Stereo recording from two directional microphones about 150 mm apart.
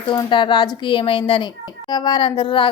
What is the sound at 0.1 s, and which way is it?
A woman's voice, 30° left (ahead or behind).